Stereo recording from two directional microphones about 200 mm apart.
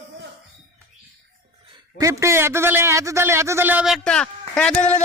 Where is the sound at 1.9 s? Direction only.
15° right (ahead or behind); by 4.9 s 5° left (ahead or behind).